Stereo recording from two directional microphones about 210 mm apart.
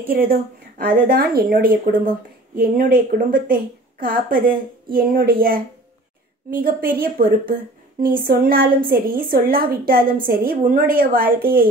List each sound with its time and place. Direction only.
0.0 s a woman's voice: 45° right (ahead or behind)